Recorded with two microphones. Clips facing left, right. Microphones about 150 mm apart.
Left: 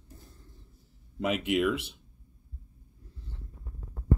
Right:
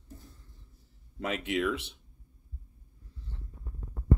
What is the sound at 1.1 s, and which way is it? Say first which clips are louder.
Speech: left 4 dB; 5° left (ahead or behind).